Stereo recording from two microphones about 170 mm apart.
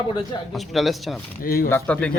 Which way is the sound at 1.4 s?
60° left (ahead or behind).